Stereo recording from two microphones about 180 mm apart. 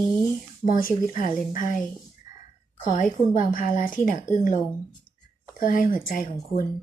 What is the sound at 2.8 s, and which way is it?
A woman's voice, 45° left (ahead or behind).